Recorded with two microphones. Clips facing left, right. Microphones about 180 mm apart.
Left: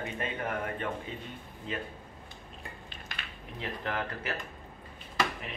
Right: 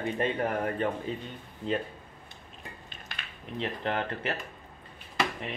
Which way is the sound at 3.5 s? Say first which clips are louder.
Right 4 dB; 25° right (ahead or behind).